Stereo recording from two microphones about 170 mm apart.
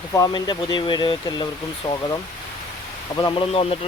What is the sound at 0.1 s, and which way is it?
Speech, 20° left (ahead or behind).